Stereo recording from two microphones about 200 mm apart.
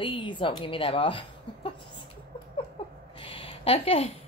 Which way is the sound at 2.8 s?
25° left (ahead or behind).